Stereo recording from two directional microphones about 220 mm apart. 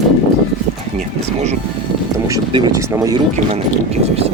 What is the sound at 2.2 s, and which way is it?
Speech, 15° right (ahead or behind).